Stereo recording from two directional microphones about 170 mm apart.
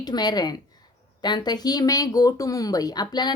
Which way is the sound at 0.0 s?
25° left (ahead or behind).